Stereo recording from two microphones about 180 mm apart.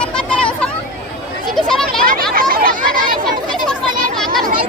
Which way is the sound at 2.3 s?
55° right (ahead or behind).